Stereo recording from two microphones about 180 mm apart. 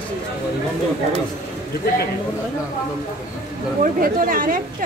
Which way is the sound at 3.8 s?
50° right (ahead or behind).